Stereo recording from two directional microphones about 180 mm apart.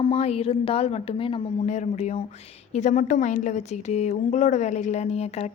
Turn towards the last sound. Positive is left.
turn(degrees=35)  # may be behind; listen again after turning